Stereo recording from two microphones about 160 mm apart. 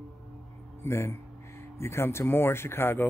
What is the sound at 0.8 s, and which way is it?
Speech, 15° left (ahead or behind).